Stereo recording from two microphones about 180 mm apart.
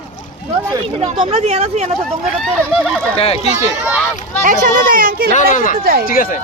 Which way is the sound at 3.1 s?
35° left (ahead or behind).